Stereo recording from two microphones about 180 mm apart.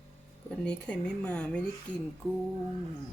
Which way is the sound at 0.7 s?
5° left (ahead or behind).